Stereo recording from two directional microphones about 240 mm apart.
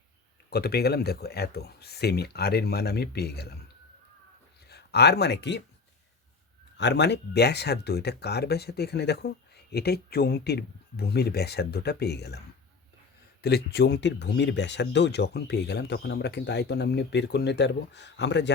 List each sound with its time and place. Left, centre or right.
0.5 s speech: left
4.7 s speech: left
6.7 s speech: left
13.4 s speech: left